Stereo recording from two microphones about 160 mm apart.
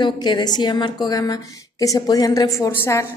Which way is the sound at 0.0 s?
30° left (ahead or behind).